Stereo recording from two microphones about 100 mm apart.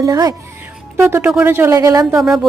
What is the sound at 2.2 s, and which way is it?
Speech, 5° right (ahead or behind).